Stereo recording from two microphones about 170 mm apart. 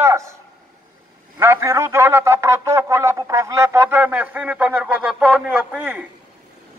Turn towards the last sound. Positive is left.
turn(degrees=-10)  # may be behind; listen again after turning